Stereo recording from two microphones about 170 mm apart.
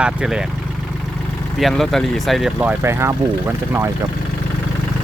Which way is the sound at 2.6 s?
10° right (ahead or behind).